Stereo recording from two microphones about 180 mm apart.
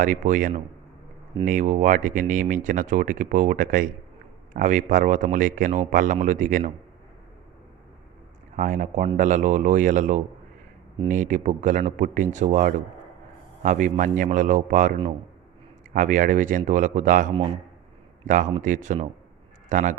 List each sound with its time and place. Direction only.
0.0 s speech: 45° right (ahead or behind)
8.5 s speech: 45° right (ahead or behind)